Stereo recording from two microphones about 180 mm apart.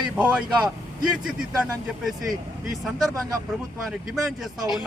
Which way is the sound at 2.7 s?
Centre (ahead or behind).